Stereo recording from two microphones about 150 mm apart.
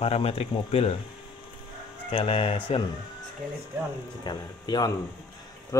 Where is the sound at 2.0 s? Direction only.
35° left (ahead or behind).